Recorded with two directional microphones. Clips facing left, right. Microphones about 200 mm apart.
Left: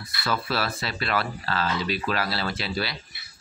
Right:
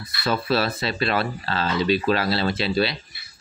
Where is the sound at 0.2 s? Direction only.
25° right (ahead or behind).